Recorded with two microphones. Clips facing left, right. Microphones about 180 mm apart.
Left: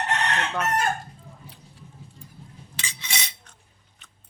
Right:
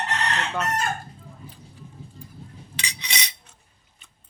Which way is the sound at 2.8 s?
20° right (ahead or behind).